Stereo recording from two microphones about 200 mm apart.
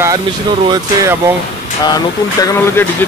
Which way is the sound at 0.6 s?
20° right (ahead or behind).